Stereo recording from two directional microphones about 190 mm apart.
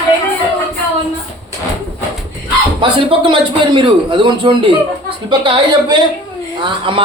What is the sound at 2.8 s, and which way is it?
Speech, 25° right (ahead or behind).